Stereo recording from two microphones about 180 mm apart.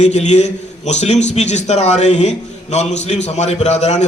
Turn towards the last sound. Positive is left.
turn(degrees=40)  # may be behind; listen again after turning